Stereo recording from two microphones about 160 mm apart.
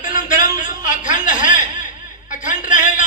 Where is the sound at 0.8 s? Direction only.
55° left (ahead or behind).